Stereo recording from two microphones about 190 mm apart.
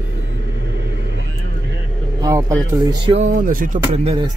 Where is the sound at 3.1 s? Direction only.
40° right (ahead or behind).